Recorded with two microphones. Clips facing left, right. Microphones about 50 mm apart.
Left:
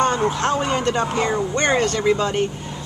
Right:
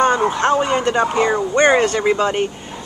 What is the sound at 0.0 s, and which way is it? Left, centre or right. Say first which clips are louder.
Speech: right 4 dB; centre.